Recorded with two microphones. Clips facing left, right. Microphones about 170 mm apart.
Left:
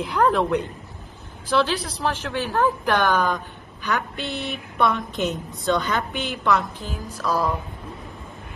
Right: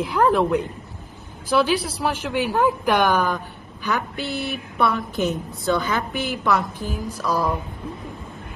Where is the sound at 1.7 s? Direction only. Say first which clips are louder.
Right 3 dB; 10° right (ahead or behind).